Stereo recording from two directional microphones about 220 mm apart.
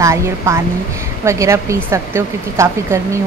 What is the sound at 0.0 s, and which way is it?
Speech, 15° right (ahead or behind).